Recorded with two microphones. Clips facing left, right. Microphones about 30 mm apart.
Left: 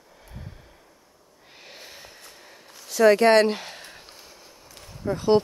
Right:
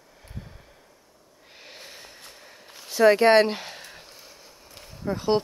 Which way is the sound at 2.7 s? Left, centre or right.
Centre.